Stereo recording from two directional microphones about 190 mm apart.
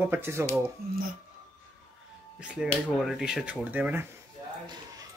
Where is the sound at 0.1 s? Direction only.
15° right (ahead or behind).